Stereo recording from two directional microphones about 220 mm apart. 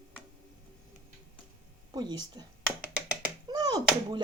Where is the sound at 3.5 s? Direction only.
20° right (ahead or behind).